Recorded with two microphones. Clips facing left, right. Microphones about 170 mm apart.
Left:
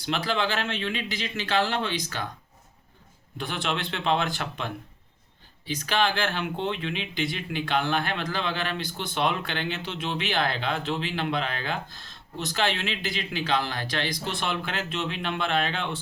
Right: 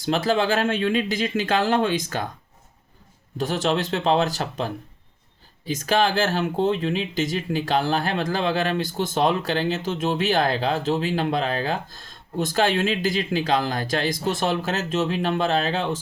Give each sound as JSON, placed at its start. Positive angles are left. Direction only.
{"t": 0.0, "sound": "speech", "side_deg": -45}
{"t": 3.3, "sound": "speech", "side_deg": -40}